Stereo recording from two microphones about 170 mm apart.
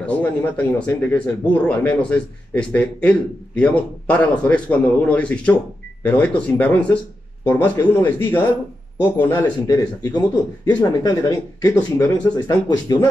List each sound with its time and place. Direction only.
0.0 s speech: 10° left (ahead or behind)
9.7 s speech: 25° left (ahead or behind)
11.7 s speech: 10° left (ahead or behind)
12.6 s speech: 25° left (ahead or behind)